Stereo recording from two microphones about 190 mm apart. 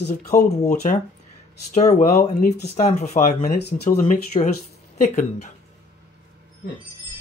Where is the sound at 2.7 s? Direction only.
40° left (ahead or behind).